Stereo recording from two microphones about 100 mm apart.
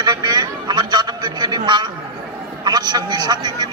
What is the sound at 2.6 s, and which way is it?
Vehicle, 45° right (ahead or behind).